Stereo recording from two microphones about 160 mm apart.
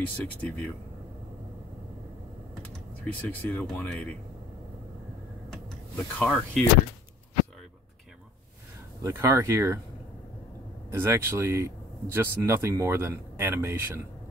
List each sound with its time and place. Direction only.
0.0 s speech: 10° left (ahead or behind)
3.0 s speech: 10° left (ahead or behind)
6.1 s speech: 5° left (ahead or behind)
9.0 s speech: 15° right (ahead or behind)
10.9 s speech: 15° right (ahead or behind)